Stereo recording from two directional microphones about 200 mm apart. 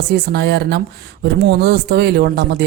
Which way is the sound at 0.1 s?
55° right (ahead or behind).